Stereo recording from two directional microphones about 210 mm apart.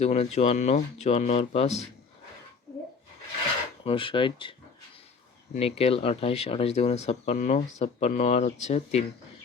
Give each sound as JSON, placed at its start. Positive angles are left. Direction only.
{"t": 0.0, "sound": "speech", "side_deg": 30}
{"t": 3.8, "sound": "speech", "side_deg": 25}
{"t": 5.5, "sound": "speech", "side_deg": 30}